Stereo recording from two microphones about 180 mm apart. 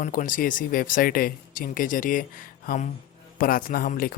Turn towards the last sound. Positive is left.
turn(degrees=55)  # may be behind; listen again after turning